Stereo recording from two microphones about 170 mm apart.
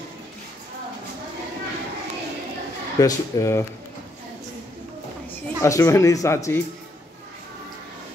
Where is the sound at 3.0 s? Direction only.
20° left (ahead or behind).